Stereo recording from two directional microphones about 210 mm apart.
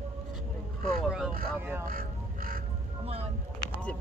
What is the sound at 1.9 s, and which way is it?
Crow, 40° right (ahead or behind).